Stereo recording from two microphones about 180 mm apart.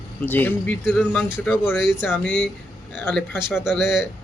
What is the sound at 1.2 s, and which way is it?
Speech, 5° right (ahead or behind).